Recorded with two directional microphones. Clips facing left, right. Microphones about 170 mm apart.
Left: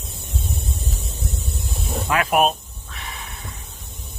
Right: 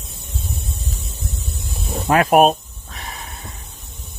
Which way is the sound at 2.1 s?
40° right (ahead or behind).